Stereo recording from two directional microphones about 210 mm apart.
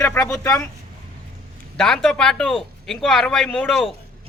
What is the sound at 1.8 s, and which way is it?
Speech, 5° left (ahead or behind).